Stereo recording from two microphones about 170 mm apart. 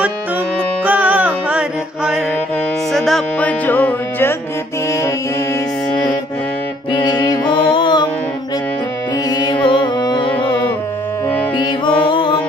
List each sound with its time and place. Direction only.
0.8 s music: 10° right (ahead or behind); by 4.4 s 10° left (ahead or behind)
6.9 s music: 25° left (ahead or behind)
9.3 s music: 25° left (ahead or behind)
11.5 s music: 25° left (ahead or behind)